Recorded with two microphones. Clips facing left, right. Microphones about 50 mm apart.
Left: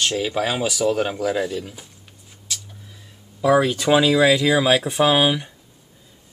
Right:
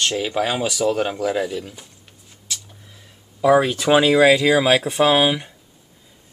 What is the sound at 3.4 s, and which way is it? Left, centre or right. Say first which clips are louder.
Speech: right 2 dB; centre.